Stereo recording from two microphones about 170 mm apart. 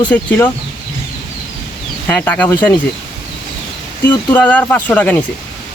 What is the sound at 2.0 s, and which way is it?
Speech, 10° left (ahead or behind).